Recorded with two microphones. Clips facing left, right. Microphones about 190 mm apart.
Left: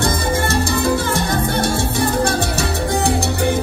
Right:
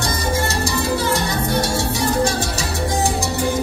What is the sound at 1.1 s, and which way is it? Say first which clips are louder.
Music: left 1 dB; 55° left (ahead or behind).